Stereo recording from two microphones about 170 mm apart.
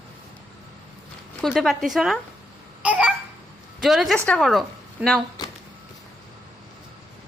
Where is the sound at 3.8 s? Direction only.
Centre (ahead or behind).